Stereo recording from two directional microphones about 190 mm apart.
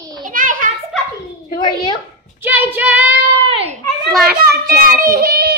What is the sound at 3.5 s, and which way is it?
Speech, 30° right (ahead or behind).